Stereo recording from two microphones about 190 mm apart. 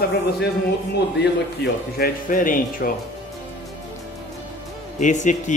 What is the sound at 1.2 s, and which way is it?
Speech, 55° left (ahead or behind).